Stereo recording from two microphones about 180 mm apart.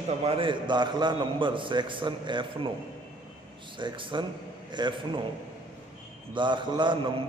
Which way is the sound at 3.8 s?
25° right (ahead or behind).